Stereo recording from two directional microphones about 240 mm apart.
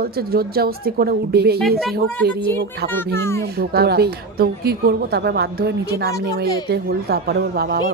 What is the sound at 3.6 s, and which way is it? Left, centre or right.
A woman's voice, right.